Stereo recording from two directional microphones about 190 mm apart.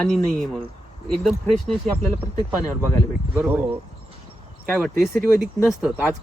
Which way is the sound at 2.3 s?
15° left (ahead or behind).